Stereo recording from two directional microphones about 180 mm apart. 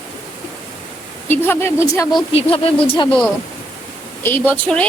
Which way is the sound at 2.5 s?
30° left (ahead or behind).